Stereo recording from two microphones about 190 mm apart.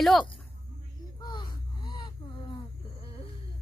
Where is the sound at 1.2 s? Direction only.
25° left (ahead or behind).